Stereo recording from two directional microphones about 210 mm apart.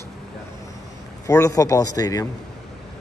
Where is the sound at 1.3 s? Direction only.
15° left (ahead or behind).